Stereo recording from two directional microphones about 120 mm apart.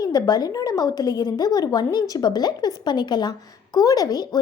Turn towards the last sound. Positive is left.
turn(degrees=30)  # may be behind; listen again after turning